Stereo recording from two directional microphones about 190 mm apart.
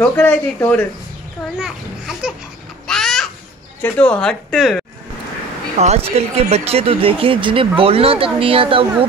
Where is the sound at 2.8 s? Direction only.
5° left (ahead or behind).